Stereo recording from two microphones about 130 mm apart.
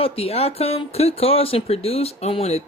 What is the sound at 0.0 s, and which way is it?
Speech, 50° left (ahead or behind).